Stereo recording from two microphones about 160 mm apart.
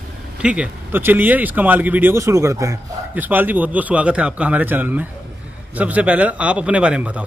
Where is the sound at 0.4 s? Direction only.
5° right (ahead or behind).